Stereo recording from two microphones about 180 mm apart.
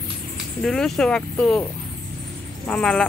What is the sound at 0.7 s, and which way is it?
Speech, 5° left (ahead or behind).